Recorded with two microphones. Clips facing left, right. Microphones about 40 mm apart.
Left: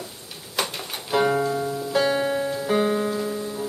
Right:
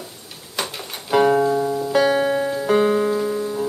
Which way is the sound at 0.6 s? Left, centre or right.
Centre.